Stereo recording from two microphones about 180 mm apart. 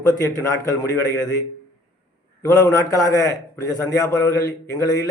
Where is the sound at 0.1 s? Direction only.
20° left (ahead or behind).